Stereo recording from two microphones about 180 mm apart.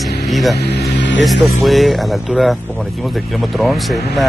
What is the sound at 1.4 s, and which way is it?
Speech, centre (ahead or behind).